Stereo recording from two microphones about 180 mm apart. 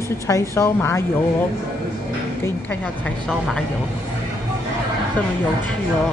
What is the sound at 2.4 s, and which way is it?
A woman's voice, 10° left (ahead or behind).